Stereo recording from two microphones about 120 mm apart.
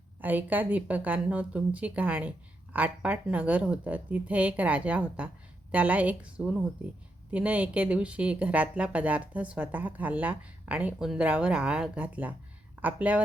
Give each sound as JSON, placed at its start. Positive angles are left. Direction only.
{"t": 0.2, "sound": "speech", "side_deg": -15}